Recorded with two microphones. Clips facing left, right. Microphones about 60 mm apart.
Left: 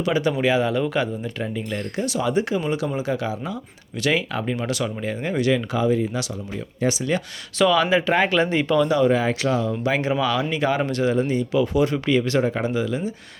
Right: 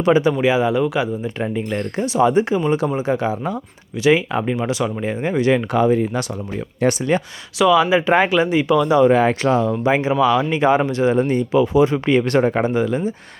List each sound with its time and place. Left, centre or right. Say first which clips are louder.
0.0 s speech: right 7 dB; right
0.4 s speech: right 4 dB; centre
1.4 s speech: right 5 dB; right
4.0 s speech: right 6 dB; right
6.8 s speech: right 5 dB; right
7.6 s speech: right 4 dB; centre
8.3 s speech: right 4 dB; centre
9.0 s speech: right 5 dB; right
9.9 s speech: right 6 dB; right
11.1 s speech: right 4 dB; right
11.5 s speech: right 6 dB; right
12.1 s speech: right 4 dB; right